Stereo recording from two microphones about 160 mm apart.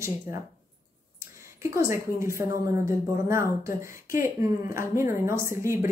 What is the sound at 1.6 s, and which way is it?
A woman's voice, 20° right (ahead or behind).